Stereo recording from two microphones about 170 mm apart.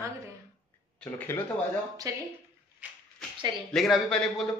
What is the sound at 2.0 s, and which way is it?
Speech, 20° right (ahead or behind).